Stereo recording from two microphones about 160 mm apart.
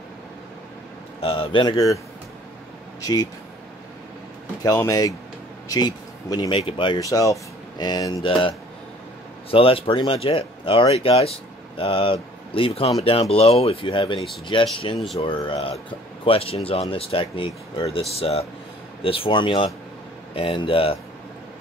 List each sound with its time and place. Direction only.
1.2 s speech: 35° left (ahead or behind)
4.6 s speech: 20° left (ahead or behind)